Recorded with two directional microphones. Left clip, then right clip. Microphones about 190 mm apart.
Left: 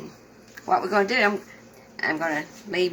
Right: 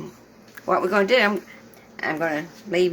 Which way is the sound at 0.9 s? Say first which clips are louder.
Right 4 dB; 70° right (ahead or behind).